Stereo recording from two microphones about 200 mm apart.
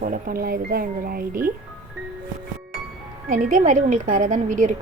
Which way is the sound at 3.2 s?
40° right (ahead or behind).